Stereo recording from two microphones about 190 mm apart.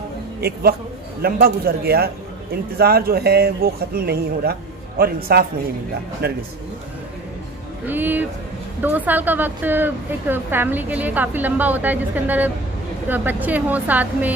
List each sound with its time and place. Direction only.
0.4 s a man's voice: 55° right (ahead or behind)
7.8 s speech: 10° right (ahead or behind)